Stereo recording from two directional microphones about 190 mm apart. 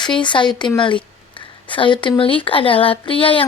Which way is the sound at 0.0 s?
25° left (ahead or behind).